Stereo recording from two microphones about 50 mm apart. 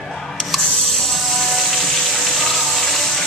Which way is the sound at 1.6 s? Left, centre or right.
Centre.